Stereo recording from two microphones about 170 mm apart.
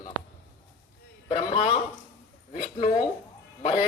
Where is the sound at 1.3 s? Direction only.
35° left (ahead or behind).